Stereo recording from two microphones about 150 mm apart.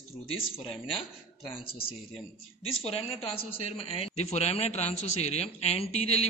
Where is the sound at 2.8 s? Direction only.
40° left (ahead or behind).